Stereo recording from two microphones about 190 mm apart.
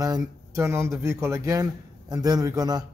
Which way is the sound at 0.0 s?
15° right (ahead or behind).